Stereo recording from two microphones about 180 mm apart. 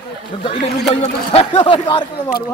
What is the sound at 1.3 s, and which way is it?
Speech, 30° left (ahead or behind).